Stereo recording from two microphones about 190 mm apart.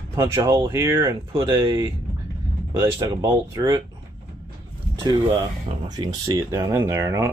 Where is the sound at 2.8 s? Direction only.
15° right (ahead or behind).